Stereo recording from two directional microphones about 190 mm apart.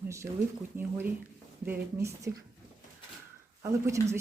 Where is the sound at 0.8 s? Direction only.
10° right (ahead or behind).